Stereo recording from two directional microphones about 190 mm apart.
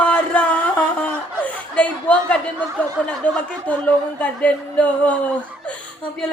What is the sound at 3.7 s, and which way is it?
Speech, 5° left (ahead or behind).